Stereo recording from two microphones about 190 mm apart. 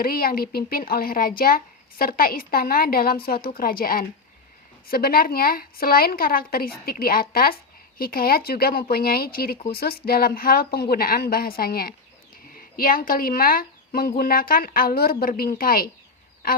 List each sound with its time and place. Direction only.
0.0 s speech: 50° left (ahead or behind)